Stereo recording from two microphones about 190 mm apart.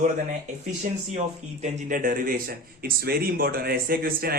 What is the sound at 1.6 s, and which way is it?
Speech, 40° right (ahead or behind).